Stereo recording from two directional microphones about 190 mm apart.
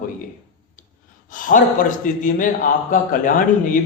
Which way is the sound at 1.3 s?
45° left (ahead or behind).